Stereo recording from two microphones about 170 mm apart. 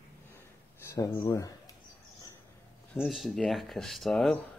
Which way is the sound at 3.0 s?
Centre (ahead or behind).